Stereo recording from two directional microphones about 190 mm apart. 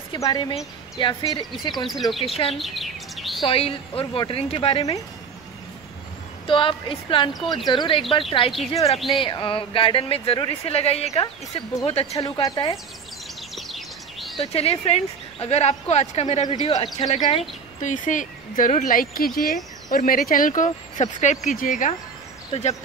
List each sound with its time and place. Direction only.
0.1 s speech: 25° left (ahead or behind)
1.9 s speech: centre (ahead or behind)
2.1 s speech: 30° left (ahead or behind)
2.5 s chirp: centre (ahead or behind)
3.4 s speech: 30° left (ahead or behind)
6.4 s speech: 25° left (ahead or behind)
13.6 s a sound: centre (ahead or behind)
14.3 s speech: 30° left (ahead or behind)
16.7 s speech: 20° left (ahead or behind)
17.1 s speech: 35° left (ahead or behind)